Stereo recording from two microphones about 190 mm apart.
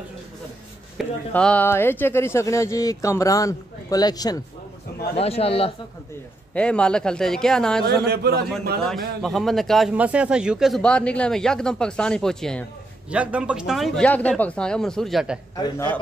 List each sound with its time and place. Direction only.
0.9 s speech: 5° left (ahead or behind)
5.1 s a man's voice: 30° left (ahead or behind)
6.5 s a man's voice: 5° left (ahead or behind)
7.9 s a man's voice: 55° right (ahead or behind)
8.8 s a man's voice: centre (ahead or behind)
15.6 s speech: 10° left (ahead or behind)